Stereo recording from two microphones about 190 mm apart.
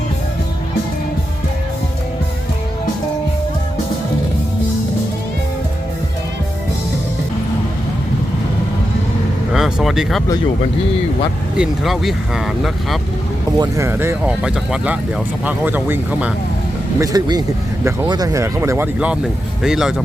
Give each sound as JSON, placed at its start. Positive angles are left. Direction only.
{"t": 9.5, "sound": "a sound", "side_deg": -5}
{"t": 11.5, "sound": "speech", "side_deg": -5}
{"t": 13.6, "sound": "speech", "side_deg": -15}
{"t": 17.0, "sound": "speech", "side_deg": -20}